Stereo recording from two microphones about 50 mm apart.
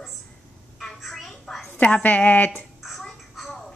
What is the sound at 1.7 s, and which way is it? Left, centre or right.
Speech, left.